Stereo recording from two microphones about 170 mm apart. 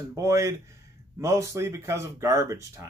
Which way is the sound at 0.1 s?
20° right (ahead or behind).